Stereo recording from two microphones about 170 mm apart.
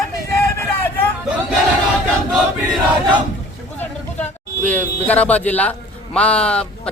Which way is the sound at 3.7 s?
10° left (ahead or behind).